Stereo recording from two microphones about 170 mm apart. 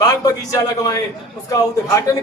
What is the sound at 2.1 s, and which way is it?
Speech, 20° left (ahead or behind).